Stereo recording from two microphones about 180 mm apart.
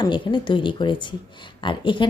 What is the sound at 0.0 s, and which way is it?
Speech, 25° left (ahead or behind).